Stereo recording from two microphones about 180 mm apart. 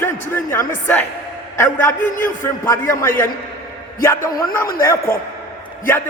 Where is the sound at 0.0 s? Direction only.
15° left (ahead or behind).